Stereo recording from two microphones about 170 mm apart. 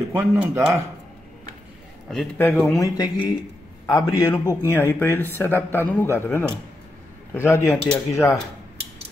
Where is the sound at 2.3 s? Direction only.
10° left (ahead or behind).